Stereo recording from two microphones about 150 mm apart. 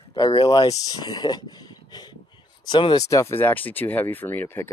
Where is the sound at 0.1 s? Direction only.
35° left (ahead or behind).